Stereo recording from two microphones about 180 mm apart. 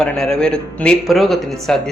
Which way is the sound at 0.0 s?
5° left (ahead or behind).